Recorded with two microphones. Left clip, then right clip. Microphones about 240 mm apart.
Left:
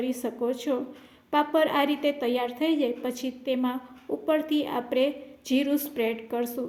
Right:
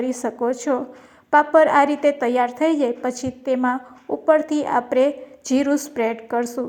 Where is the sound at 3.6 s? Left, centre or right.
Right.